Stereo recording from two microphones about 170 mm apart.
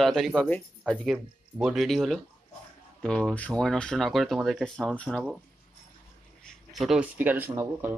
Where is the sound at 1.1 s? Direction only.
5° right (ahead or behind).